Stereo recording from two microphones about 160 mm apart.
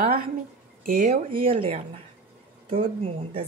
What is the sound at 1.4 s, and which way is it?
Speech, 35° right (ahead or behind).